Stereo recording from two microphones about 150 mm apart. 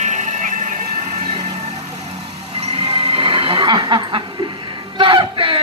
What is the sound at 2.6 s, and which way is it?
Music, 40° right (ahead or behind).